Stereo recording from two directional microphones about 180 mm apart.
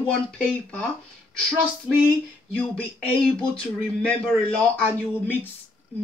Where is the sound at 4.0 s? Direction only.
5° left (ahead or behind).